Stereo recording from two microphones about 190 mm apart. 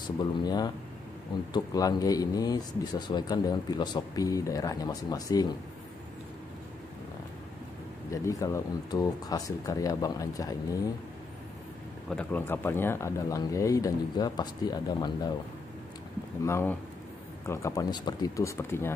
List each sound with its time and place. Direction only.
0.2 s speech: 20° left (ahead or behind)
8.1 s speech: 15° left (ahead or behind)
12.2 s speech: 10° left (ahead or behind)
16.4 s speech: 15° left (ahead or behind)